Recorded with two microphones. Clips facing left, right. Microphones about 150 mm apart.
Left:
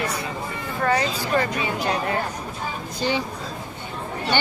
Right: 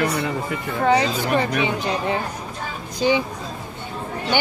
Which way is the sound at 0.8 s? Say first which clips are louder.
Right 4 dB; 20° right (ahead or behind).